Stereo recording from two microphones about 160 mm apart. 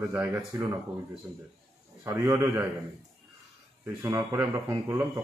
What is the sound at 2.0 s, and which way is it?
Speech, 20° right (ahead or behind).